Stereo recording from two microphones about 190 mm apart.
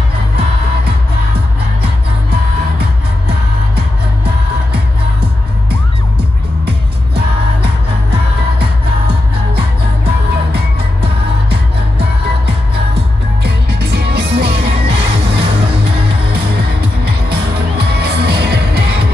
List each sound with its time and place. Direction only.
9.6 s music: 60° right (ahead or behind)
13.4 s music: 60° right (ahead or behind)